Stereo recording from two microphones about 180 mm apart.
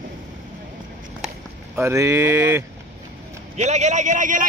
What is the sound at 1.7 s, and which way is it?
Mantra, 15° right (ahead or behind).